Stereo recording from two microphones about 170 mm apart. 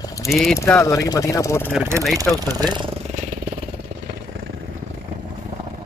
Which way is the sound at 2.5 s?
25° right (ahead or behind).